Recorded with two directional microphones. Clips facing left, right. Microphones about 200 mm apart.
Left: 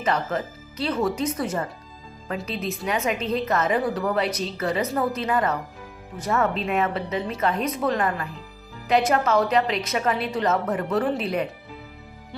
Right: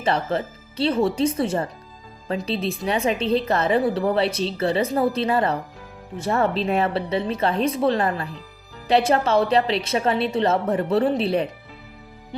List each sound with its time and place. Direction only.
0.0 s a woman's voice: 30° right (ahead or behind)
12.3 s music: 20° right (ahead or behind)